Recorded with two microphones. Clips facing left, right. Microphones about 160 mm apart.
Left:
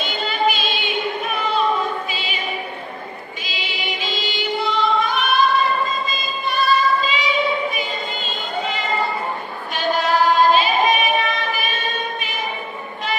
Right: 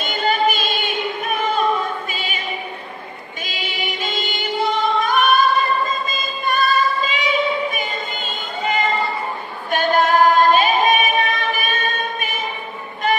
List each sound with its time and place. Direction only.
0.0 s music: 50° right (ahead or behind)
3.4 s music: 45° right (ahead or behind)
6.0 s singing: 50° right (ahead or behind)